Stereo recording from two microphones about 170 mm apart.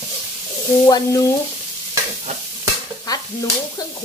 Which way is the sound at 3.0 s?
20° left (ahead or behind).